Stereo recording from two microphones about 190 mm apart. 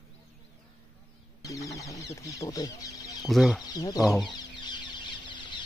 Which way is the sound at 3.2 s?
Centre (ahead or behind).